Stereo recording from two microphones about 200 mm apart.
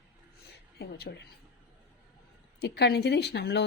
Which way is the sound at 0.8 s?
50° left (ahead or behind).